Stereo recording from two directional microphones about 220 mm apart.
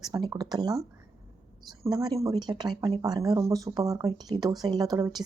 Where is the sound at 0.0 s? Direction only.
20° right (ahead or behind).